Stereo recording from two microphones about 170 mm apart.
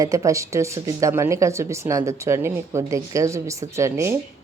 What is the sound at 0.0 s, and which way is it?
Speech, 20° right (ahead or behind).